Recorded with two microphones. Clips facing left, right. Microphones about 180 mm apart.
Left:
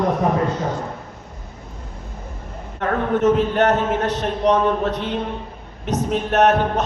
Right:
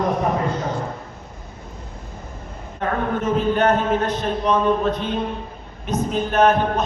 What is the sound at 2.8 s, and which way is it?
A man's voice, 75° left (ahead or behind).